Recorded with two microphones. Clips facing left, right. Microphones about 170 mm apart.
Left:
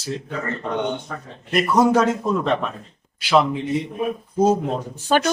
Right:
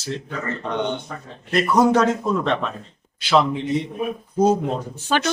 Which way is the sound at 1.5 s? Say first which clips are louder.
Even; 5° left (ahead or behind).